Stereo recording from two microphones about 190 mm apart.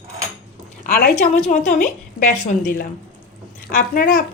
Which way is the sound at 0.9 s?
50° left (ahead or behind).